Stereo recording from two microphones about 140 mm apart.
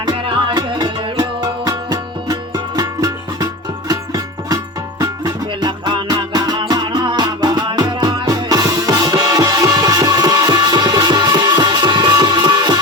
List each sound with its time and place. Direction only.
0.0 s music: 30° right (ahead or behind)